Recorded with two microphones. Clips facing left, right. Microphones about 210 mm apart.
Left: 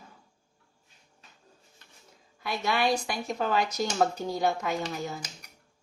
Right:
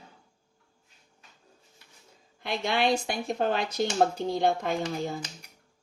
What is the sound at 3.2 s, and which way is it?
Speech, 55° right (ahead or behind).